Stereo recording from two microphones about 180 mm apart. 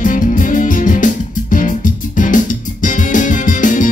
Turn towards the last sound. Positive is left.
turn(degrees=45)  # may be behind; listen again after turning